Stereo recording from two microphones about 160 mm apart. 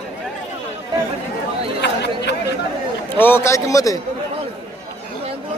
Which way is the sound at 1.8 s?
90° left.